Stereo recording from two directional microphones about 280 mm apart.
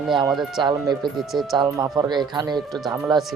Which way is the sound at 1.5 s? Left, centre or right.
Centre.